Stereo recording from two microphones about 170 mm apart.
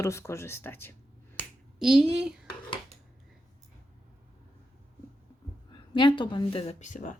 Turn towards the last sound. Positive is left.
turn(degrees=45)  # may be behind; listen again after turning